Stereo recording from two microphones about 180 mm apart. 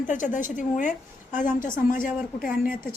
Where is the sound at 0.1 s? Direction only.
45° left (ahead or behind).